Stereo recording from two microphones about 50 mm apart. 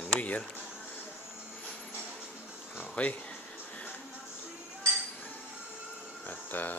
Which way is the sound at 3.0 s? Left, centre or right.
Left.